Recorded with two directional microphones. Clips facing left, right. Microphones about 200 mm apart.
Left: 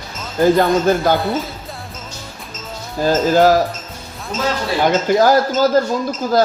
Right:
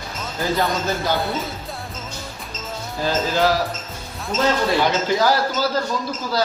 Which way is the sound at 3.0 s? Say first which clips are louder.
Left 7 dB; 45° left (ahead or behind).